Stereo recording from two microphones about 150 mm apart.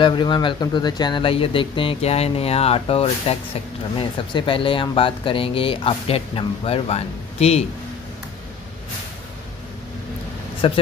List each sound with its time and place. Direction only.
0.0 s speech: 30° left (ahead or behind)
10.6 s speech: 35° left (ahead or behind)